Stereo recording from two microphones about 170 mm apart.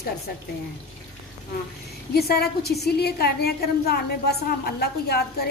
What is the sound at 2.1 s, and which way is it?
A woman's voice, 65° left (ahead or behind).